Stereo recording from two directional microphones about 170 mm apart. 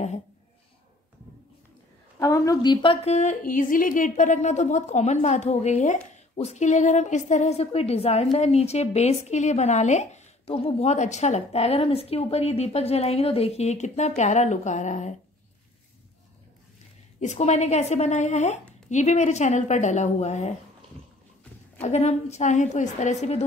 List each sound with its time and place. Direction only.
2.1 s a woman's voice: 20° left (ahead or behind); by 15.1 s 45° left (ahead or behind)
17.2 s a woman's voice: 40° left (ahead or behind)
21.8 s a woman's voice: 40° left (ahead or behind)